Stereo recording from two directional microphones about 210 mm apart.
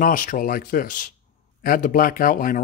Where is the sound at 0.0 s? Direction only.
40° left (ahead or behind).